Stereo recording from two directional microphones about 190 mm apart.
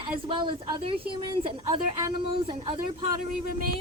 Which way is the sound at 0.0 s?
25° right (ahead or behind).